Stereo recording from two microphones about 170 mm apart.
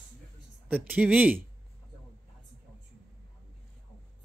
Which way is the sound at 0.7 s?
10° right (ahead or behind).